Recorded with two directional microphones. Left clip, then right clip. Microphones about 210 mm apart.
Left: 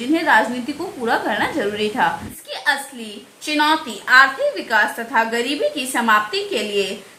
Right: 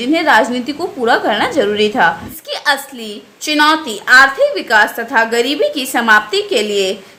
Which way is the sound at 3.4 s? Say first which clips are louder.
Right 6 dB; 45° right (ahead or behind).